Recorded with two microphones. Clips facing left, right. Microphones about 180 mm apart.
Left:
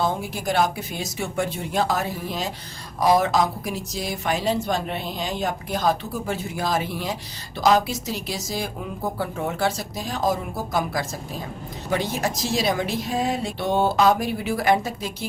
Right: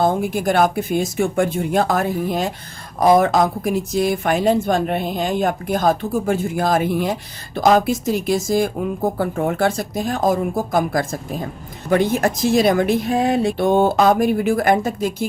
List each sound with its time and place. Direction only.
0.0 s speech: 50° right (ahead or behind)